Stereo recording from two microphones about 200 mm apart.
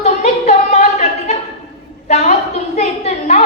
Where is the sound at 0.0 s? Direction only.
35° left (ahead or behind).